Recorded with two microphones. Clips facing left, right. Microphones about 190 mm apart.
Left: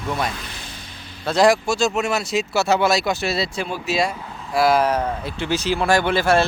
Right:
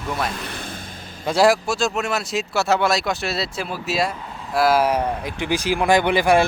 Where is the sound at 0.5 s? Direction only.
50° right (ahead or behind).